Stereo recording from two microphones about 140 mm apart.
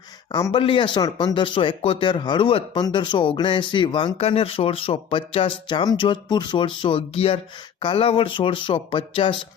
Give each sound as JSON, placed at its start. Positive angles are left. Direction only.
{"t": 0.3, "sound": "a man's voice", "side_deg": 25}
{"t": 0.5, "sound": "speech", "side_deg": 35}